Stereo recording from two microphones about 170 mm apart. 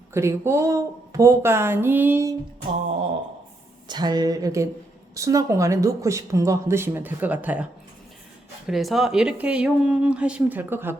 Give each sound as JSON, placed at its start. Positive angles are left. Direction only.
{"t": 0.1, "sound": "speech", "side_deg": -15}
{"t": 3.8, "sound": "speech", "side_deg": -25}